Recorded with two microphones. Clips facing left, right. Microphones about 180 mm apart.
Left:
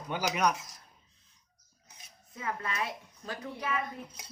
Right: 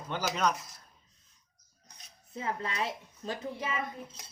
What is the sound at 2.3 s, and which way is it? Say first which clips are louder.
A woman's voice: right 1 dB; 25° right (ahead or behind).